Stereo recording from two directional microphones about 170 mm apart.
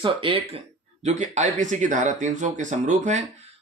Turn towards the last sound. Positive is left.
turn(degrees=-45)  # may be behind; listen again after turning